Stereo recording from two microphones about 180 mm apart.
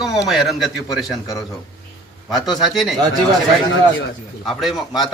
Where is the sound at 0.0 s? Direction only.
Centre (ahead or behind).